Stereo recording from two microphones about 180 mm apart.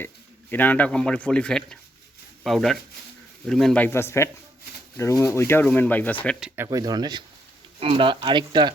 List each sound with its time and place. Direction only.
0.5 s speech: 10° left (ahead or behind)
6.7 s speech: 20° right (ahead or behind)